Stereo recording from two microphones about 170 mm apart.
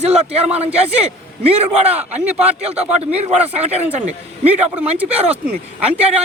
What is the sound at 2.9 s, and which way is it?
Speech, 40° right (ahead or behind).